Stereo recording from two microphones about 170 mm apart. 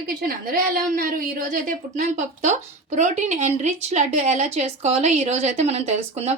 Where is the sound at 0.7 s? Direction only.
55° right (ahead or behind).